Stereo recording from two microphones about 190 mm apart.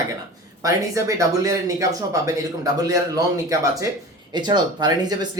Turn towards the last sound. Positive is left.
turn(degrees=-20)  # may be behind; listen again after turning